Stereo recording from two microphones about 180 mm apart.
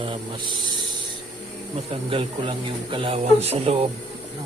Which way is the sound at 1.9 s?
30° right (ahead or behind).